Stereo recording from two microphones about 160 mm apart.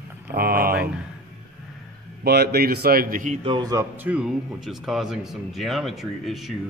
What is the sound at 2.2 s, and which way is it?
A man's voice, 85° right.